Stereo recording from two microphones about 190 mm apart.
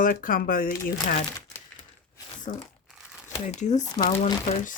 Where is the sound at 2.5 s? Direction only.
40° left (ahead or behind).